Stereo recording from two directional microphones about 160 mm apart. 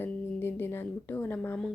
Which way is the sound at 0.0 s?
10° left (ahead or behind).